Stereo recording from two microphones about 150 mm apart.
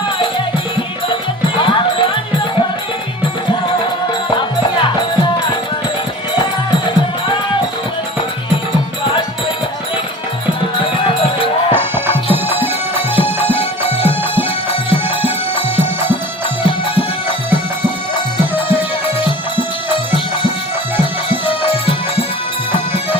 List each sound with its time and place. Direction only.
1.1 s music: 35° left (ahead or behind)
11.7 s music: 15° right (ahead or behind)
13.6 s music: 40° left (ahead or behind)
15.2 s music: 40° left (ahead or behind)
19.2 s music: 35° left (ahead or behind)
21.0 s music: 40° left (ahead or behind)